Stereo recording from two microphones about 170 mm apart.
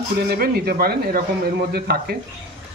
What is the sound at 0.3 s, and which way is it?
Speech, 65° right (ahead or behind).